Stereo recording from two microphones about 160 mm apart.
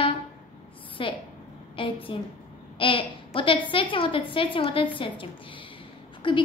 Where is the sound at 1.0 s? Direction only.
30° left (ahead or behind).